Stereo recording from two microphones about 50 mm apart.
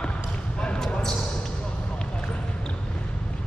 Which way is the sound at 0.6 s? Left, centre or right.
Centre.